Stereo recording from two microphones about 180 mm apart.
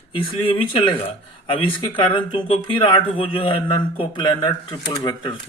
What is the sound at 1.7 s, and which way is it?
Speech, 25° left (ahead or behind).